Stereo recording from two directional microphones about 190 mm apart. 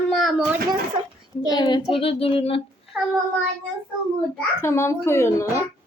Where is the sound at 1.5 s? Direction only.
20° left (ahead or behind).